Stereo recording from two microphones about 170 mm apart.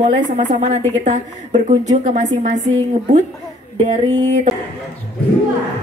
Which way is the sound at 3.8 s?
35° right (ahead or behind).